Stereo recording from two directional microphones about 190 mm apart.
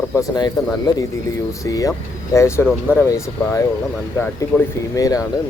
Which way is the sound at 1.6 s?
15° left (ahead or behind).